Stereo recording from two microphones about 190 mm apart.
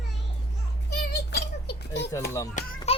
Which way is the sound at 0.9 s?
60° left (ahead or behind).